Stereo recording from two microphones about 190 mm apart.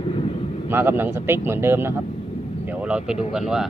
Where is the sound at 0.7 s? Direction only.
10° right (ahead or behind).